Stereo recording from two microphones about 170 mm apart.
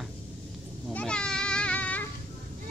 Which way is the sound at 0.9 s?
5° left (ahead or behind).